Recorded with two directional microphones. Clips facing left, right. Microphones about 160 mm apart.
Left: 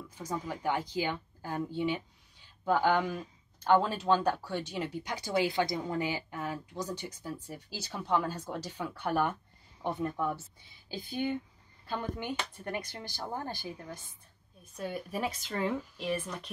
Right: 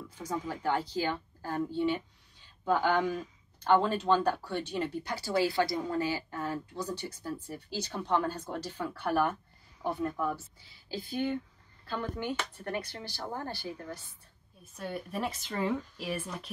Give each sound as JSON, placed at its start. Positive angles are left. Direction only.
{"t": 0.5, "sound": "speech", "side_deg": 15}
{"t": 9.0, "sound": "speech", "side_deg": -5}
{"t": 9.8, "sound": "speech", "side_deg": 20}
{"t": 14.6, "sound": "speech", "side_deg": 0}